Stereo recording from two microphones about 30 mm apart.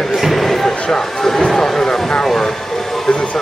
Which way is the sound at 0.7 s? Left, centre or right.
Left.